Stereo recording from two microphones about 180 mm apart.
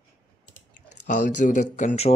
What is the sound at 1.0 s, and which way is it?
Speech, 40° left (ahead or behind).